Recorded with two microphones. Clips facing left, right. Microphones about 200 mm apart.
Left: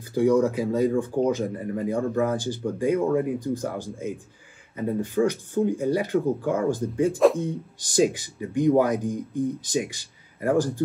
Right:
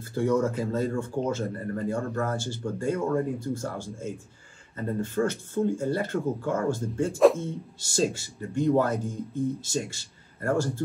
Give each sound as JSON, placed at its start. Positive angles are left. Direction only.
{"t": 0.0, "sound": "speech", "side_deg": 15}